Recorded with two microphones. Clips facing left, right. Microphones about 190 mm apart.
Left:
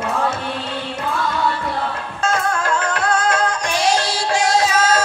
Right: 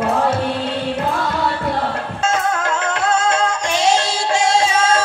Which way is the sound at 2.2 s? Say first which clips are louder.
Even; 25° right (ahead or behind).